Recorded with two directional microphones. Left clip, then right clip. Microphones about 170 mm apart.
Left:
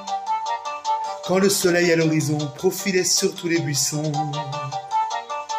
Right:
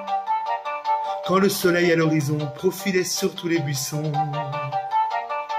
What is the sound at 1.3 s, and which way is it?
Speech, 15° right (ahead or behind).